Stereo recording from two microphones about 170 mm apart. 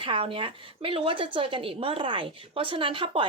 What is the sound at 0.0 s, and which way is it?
A woman's voice, 30° right (ahead or behind).